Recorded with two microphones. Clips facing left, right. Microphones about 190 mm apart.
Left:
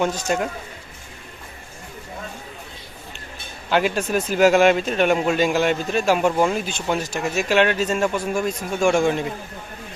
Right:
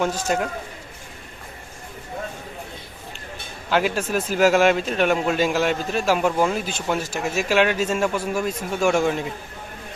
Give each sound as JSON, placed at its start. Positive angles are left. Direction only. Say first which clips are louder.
{"t": 0.0, "sound": "a man's voice", "louder": "left 1 dB", "side_deg": 0}
{"t": 3.7, "sound": "a man's voice", "louder": "left 1 dB", "side_deg": 0}